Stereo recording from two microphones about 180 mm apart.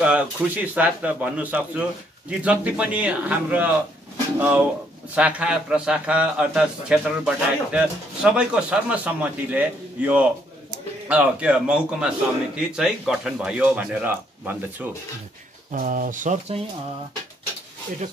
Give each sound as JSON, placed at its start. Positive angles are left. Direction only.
{"t": 0.0, "sound": "a man's voice", "side_deg": -5}
{"t": 15.7, "sound": "speech", "side_deg": -50}